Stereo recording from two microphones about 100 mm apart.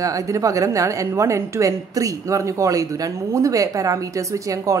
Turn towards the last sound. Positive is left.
turn(degrees=-35)  # may be behind; listen again after turning